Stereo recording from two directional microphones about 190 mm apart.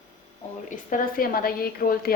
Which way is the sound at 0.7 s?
40° left (ahead or behind).